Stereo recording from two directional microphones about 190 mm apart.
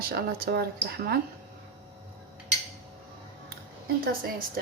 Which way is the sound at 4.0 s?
50° right (ahead or behind).